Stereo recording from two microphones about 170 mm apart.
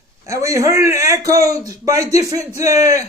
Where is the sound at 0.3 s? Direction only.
20° right (ahead or behind).